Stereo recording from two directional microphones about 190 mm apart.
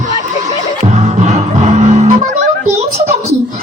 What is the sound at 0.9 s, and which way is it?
Music, 35° right (ahead or behind).